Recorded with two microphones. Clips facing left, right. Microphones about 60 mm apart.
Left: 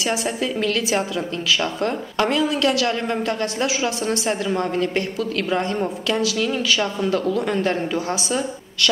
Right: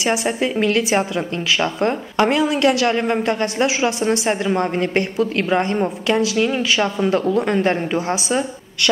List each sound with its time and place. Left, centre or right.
0.0 s a woman's voice: right